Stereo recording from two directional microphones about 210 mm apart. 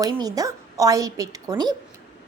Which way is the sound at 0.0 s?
15° right (ahead or behind).